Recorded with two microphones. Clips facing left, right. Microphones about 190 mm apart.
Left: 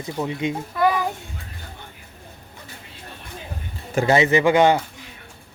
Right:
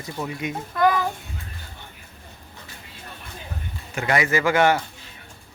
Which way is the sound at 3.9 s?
25° left (ahead or behind).